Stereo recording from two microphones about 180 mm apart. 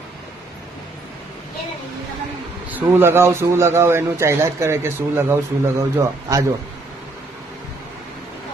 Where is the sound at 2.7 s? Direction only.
10° right (ahead or behind).